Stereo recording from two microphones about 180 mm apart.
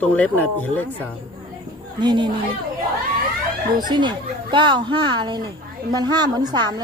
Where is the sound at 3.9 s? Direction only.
25° right (ahead or behind).